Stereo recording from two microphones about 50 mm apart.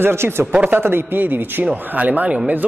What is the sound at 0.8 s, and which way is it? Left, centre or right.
A man's voice, right.